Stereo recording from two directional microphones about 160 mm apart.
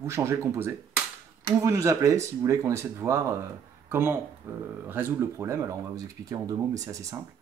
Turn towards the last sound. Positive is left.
turn(degrees=-20)  # may be behind; listen again after turning